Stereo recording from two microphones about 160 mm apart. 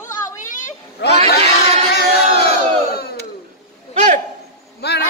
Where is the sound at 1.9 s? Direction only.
80° left.